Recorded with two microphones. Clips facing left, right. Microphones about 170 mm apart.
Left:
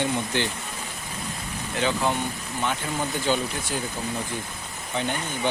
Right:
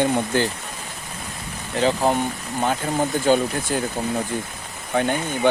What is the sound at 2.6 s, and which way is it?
Speech, 45° right (ahead or behind).